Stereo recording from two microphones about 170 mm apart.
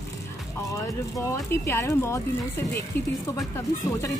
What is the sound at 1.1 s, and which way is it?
A woman's voice, 20° left (ahead or behind).